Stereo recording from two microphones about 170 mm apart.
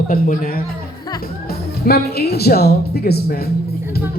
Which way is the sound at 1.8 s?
65° left (ahead or behind).